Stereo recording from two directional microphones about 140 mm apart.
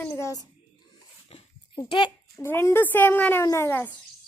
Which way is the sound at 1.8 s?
35° left (ahead or behind).